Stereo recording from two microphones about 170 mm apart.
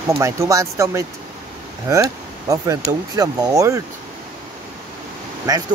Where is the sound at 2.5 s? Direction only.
20° right (ahead or behind).